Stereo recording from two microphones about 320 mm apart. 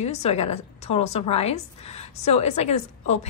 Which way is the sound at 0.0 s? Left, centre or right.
Centre.